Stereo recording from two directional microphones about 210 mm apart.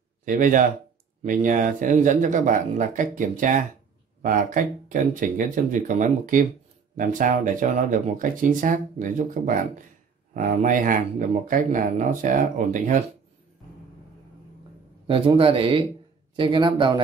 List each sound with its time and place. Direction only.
0.2 s speech: 40° right (ahead or behind)
15.0 s a man's voice: 25° right (ahead or behind)